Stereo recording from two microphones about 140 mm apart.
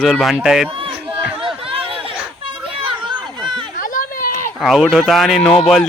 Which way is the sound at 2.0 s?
40° right (ahead or behind).